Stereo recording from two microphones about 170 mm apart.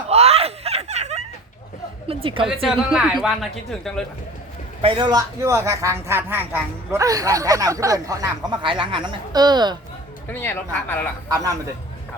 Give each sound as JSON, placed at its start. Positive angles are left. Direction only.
{"t": 0.1, "sound": "giggle", "side_deg": -35}
{"t": 2.0, "sound": "a woman's voice", "side_deg": -30}
{"t": 2.5, "sound": "speech", "side_deg": -5}
{"t": 4.8, "sound": "a man's voice", "side_deg": -30}
{"t": 10.2, "sound": "speech", "side_deg": 15}
{"t": 11.3, "sound": "a man's voice", "side_deg": -20}